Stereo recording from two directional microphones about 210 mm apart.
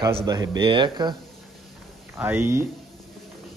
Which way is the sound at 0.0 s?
20° right (ahead or behind).